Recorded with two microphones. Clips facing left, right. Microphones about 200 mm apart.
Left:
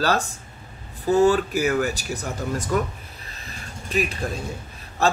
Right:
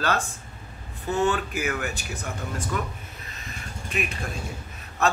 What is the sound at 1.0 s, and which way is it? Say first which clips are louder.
Speech: left 7 dB; 35° left (ahead or behind).